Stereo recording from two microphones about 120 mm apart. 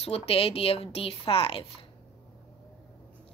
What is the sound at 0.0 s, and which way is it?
Speech, 55° left (ahead or behind).